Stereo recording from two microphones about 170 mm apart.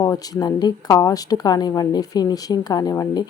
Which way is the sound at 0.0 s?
20° left (ahead or behind).